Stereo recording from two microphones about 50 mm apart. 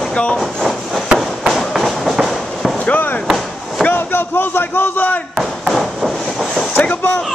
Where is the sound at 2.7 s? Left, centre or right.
Left.